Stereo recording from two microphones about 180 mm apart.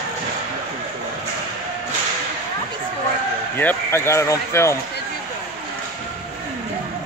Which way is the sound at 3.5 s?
10° left (ahead or behind).